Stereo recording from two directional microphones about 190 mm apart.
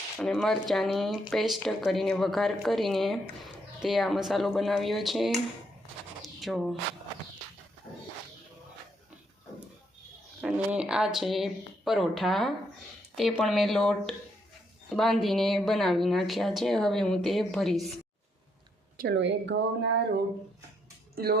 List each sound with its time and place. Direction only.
0.2 s speech: centre (ahead or behind)
6.2 s a sound: centre (ahead or behind)
10.4 s speech: 5° right (ahead or behind)
18.9 s a woman's voice: 65° right (ahead or behind)
21.2 s speech: 50° right (ahead or behind)